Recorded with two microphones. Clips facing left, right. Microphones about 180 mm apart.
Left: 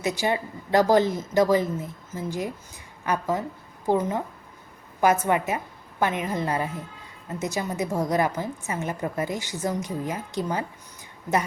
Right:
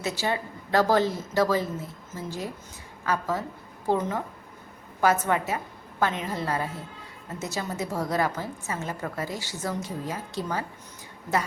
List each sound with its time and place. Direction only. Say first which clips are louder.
0.0 s a woman's voice: left 3 dB; 15° left (ahead or behind)